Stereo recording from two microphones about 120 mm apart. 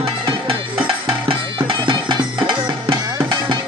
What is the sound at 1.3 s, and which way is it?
Music, 45° right (ahead or behind).